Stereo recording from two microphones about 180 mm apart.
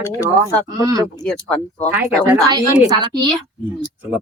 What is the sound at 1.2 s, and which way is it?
Speech, 5° left (ahead or behind).